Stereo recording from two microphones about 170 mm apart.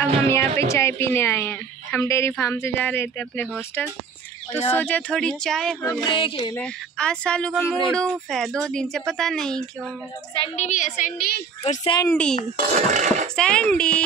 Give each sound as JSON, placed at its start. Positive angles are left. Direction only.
{"t": 0.3, "sound": "a woman's voice", "side_deg": 15}
{"t": 4.7, "sound": "speech", "side_deg": 10}
{"t": 5.9, "sound": "a sound", "side_deg": 25}
{"t": 6.5, "sound": "speech", "side_deg": 5}
{"t": 10.4, "sound": "a woman's voice", "side_deg": 40}
{"t": 11.8, "sound": "a sound", "side_deg": 25}
{"t": 12.1, "sound": "a woman's voice", "side_deg": 5}
{"t": 12.5, "sound": "speech", "side_deg": -45}
{"t": 13.4, "sound": "speech", "side_deg": 5}